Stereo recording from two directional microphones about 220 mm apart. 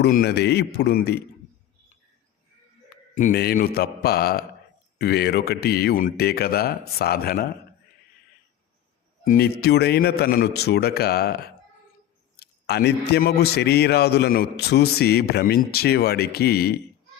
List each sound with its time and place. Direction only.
0.0 s a man's voice: 45° left (ahead or behind)
3.2 s a man's voice: 40° left (ahead or behind)
9.2 s a man's voice: 40° left (ahead or behind)